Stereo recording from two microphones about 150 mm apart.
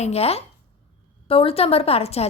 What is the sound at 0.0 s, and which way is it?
A woman's voice, 45° left (ahead or behind).